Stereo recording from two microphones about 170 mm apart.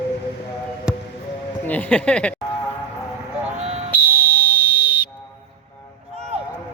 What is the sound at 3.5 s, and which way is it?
Fire alarm, 35° right (ahead or behind).